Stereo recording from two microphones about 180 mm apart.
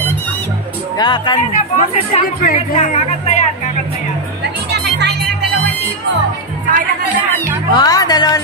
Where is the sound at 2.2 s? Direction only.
50° left (ahead or behind).